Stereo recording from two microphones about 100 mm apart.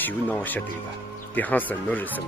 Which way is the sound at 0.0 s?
20° left (ahead or behind).